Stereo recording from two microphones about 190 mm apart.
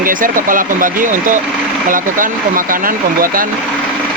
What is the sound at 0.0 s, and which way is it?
Speech, 45° right (ahead or behind).